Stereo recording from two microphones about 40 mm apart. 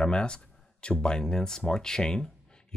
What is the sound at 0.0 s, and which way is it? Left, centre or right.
Speech, left.